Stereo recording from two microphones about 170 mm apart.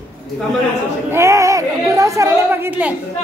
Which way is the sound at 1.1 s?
15° right (ahead or behind).